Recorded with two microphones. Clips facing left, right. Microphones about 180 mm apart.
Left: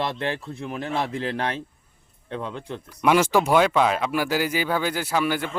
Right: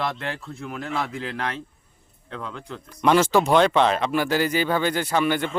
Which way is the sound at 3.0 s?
10° left (ahead or behind).